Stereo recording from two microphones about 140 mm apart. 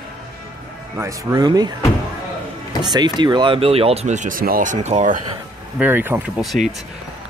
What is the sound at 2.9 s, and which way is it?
Speech, 30° right (ahead or behind).